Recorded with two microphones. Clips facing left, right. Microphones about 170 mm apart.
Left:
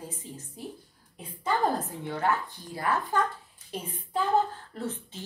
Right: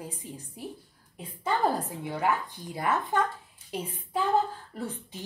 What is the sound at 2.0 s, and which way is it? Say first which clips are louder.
A woman's voice: even; 10° right (ahead or behind).